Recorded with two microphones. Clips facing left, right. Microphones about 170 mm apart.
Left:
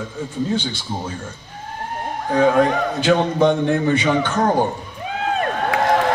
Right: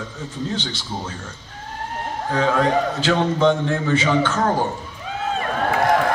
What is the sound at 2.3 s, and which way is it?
Speech, 15° left (ahead or behind).